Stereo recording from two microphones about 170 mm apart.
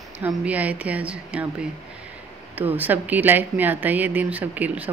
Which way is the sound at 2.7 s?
10° right (ahead or behind).